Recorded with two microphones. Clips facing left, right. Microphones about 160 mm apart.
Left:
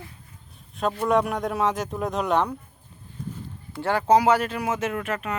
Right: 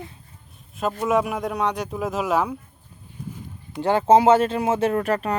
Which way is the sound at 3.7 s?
20° right (ahead or behind).